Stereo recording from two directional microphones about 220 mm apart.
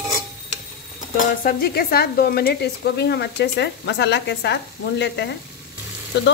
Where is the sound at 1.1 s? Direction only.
40° left (ahead or behind).